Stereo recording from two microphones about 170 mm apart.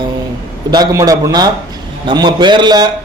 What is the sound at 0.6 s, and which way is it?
A man's voice, 25° right (ahead or behind).